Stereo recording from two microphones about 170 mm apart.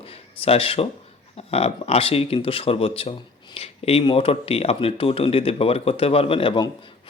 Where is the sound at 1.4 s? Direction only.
35° left (ahead or behind).